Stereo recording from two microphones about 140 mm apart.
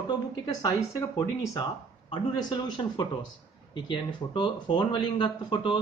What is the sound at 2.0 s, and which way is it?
Speech, 35° left (ahead or behind).